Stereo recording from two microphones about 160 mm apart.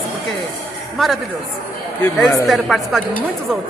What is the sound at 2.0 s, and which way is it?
A woman's voice, centre (ahead or behind).